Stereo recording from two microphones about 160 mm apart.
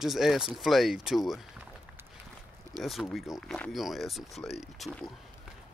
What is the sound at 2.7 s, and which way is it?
Speech, 25° right (ahead or behind).